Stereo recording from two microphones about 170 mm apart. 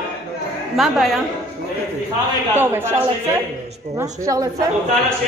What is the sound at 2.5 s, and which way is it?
Speech, 15° right (ahead or behind).